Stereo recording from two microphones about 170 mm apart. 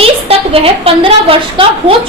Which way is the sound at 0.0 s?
35° right (ahead or behind).